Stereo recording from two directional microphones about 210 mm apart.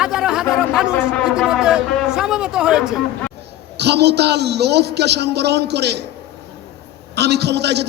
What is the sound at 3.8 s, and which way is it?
A man's voice, 50° right (ahead or behind).